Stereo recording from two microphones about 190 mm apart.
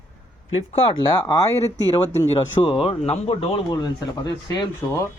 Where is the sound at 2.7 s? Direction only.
30° left (ahead or behind).